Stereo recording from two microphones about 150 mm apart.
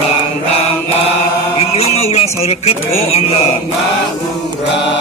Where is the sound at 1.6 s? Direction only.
45° left (ahead or behind).